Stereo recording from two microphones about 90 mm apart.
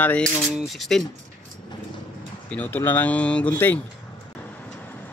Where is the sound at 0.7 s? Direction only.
5° left (ahead or behind).